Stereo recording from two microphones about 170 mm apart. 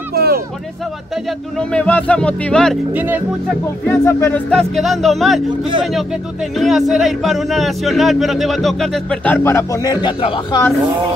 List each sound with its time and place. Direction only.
0.1 s hubbub: 65° right (ahead or behind)
1.6 s speech: 5° left (ahead or behind)
2.9 s speech: 10° right (ahead or behind)
3.8 s speech: 10° left (ahead or behind)
4.5 s speech: centre (ahead or behind); by 10.6 s 30° left (ahead or behind)